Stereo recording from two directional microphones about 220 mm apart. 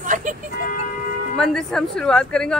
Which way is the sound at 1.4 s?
Centre (ahead or behind).